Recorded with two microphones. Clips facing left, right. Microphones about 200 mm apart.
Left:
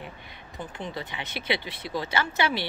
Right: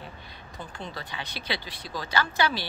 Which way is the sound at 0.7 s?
20° left (ahead or behind).